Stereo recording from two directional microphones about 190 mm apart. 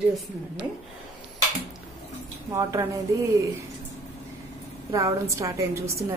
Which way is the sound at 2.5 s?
15° right (ahead or behind).